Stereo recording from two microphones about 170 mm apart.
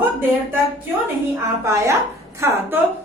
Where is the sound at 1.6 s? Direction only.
15° right (ahead or behind).